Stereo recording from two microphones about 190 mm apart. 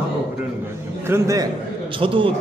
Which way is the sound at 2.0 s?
25° right (ahead or behind).